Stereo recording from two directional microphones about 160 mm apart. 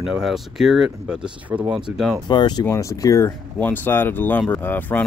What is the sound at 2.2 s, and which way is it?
Speech, 30° left (ahead or behind).